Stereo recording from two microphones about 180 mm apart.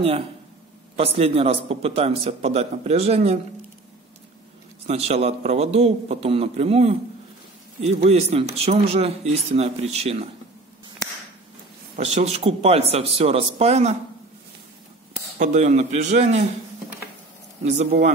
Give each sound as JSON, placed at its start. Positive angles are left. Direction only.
{"t": 0.9, "sound": "speech", "side_deg": -35}
{"t": 4.8, "sound": "speech", "side_deg": -35}
{"t": 12.0, "sound": "speech", "side_deg": -35}
{"t": 15.3, "sound": "speech", "side_deg": -40}
{"t": 17.6, "sound": "speech", "side_deg": -40}